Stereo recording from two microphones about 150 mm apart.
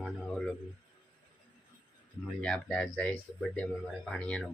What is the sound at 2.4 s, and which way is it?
Speech, 5° left (ahead or behind).